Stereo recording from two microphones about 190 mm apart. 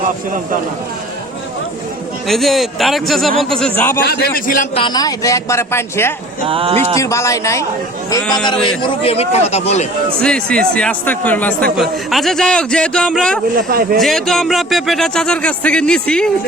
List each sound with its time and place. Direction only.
2.2 s speech: centre (ahead or behind)
4.0 s a man's voice: 55° left (ahead or behind)
4.4 s a man's voice: 45° left (ahead or behind)
4.7 s speech: 25° left (ahead or behind)
6.5 s speech: 30° right (ahead or behind)
7.0 s speech: 15° left (ahead or behind)
8.8 s speech: 30° left (ahead or behind)
10.2 s speech: 5° left (ahead or behind)
13.6 s speech: 50° right (ahead or behind)
14.0 s speech: centre (ahead or behind)